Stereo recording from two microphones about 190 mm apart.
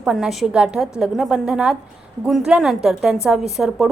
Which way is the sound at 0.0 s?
Centre (ahead or behind).